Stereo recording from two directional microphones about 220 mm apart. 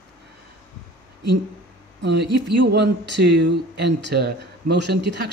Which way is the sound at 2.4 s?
50° right (ahead or behind).